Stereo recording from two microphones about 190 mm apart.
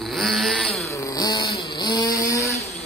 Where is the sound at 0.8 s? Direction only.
20° left (ahead or behind).